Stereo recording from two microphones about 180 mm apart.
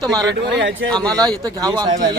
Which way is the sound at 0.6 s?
90° right.